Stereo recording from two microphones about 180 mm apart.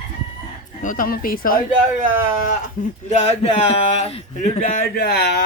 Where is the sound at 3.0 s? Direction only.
35° left (ahead or behind); by 5.4 s 60° left (ahead or behind).